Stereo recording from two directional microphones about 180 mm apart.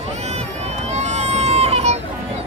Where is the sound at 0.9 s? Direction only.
40° right (ahead or behind).